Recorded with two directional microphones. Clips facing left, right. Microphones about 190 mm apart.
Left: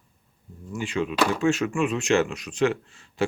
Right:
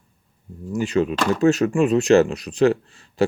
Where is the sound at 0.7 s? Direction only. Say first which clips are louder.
Right 5 dB; 40° right (ahead or behind).